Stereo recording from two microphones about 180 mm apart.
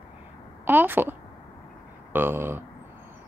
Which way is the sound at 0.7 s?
10° right (ahead or behind).